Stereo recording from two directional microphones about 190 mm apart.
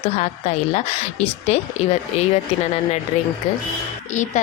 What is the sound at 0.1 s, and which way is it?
A woman's voice, 35° left (ahead or behind).